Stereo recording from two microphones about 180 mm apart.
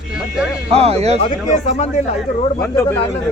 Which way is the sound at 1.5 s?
40° left (ahead or behind).